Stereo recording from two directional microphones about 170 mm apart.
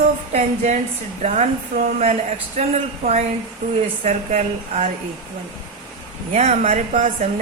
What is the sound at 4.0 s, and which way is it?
Speech, 45° right (ahead or behind).